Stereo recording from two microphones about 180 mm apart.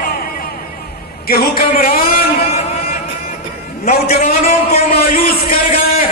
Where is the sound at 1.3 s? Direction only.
55° left (ahead or behind).